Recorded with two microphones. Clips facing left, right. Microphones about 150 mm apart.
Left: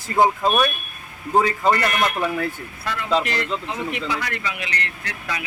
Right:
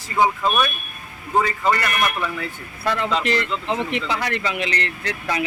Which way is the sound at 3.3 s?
35° left (ahead or behind).